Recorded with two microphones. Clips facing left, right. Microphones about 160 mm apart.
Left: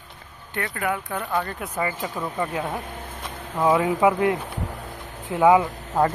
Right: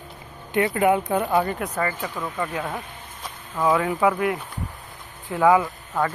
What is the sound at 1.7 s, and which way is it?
Speech, 15° left (ahead or behind).